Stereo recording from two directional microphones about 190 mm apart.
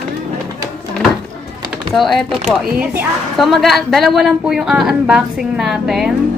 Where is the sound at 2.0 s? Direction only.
Centre (ahead or behind).